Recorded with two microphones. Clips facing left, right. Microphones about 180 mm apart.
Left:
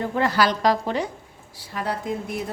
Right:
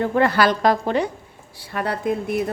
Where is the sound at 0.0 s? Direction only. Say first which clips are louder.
Right 4 dB; 60° right (ahead or behind).